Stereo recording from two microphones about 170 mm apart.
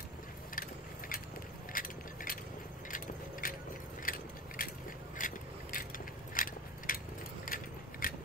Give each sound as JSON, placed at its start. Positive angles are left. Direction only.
{"t": 0.6, "sound": "a sound", "side_deg": 55}
{"t": 1.7, "sound": "keys jangling", "side_deg": 55}
{"t": 2.9, "sound": "vehicle", "side_deg": 55}
{"t": 4.0, "sound": "biting", "side_deg": 55}
{"t": 5.1, "sound": "vehicle", "side_deg": 55}
{"t": 6.3, "sound": "mechanisms", "side_deg": 55}
{"t": 7.4, "sound": "keys jangling", "side_deg": 55}